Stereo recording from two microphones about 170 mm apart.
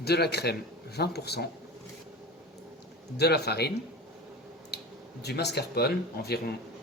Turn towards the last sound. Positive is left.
turn(degrees=70)  # may be behind; listen again after turning